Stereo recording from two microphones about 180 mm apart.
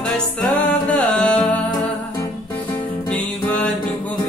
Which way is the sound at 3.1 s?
5° left (ahead or behind).